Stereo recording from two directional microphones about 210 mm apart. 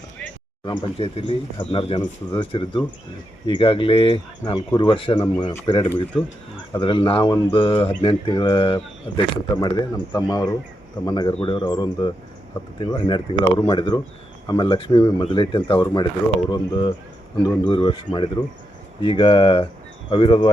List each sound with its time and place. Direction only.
0.6 s speech: 20° left (ahead or behind)